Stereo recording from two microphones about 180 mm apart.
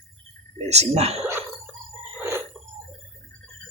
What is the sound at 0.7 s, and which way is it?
Speech, 35° right (ahead or behind).